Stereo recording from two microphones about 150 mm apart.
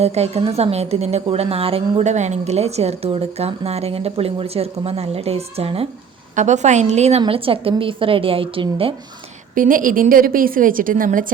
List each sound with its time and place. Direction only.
0.0 s a woman's voice: 45° right (ahead or behind)
6.3 s a woman's voice: 55° right (ahead or behind)
7.2 s a woman's voice: 35° right (ahead or behind)
9.6 s a woman's voice: 65° right (ahead or behind)